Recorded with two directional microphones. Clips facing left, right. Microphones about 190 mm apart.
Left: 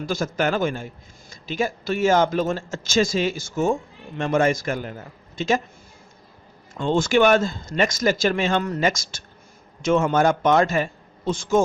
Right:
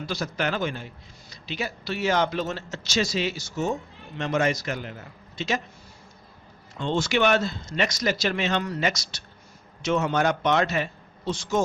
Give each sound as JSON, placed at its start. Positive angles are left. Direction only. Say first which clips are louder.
{"t": 0.0, "sound": "speech", "louder": "left 5 dB", "side_deg": 50}
{"t": 6.7, "sound": "speech", "louder": "left 5 dB", "side_deg": 50}